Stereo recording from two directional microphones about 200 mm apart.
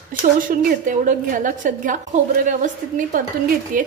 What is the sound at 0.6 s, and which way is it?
A woman's voice, 40° right (ahead or behind).